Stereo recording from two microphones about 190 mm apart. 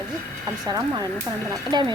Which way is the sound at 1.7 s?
25° right (ahead or behind).